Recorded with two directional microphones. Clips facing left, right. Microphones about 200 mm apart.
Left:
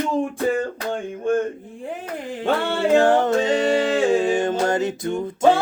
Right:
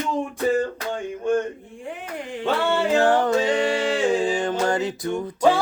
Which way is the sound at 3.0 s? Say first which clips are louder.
Left 2 dB; 20° left (ahead or behind).